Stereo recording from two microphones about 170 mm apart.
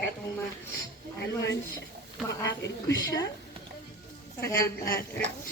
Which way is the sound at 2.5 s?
90° left.